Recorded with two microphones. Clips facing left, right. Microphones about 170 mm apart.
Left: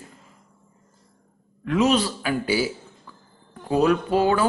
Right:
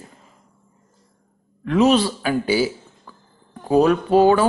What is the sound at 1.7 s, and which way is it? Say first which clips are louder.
Speech: right 4 dB; 30° right (ahead or behind).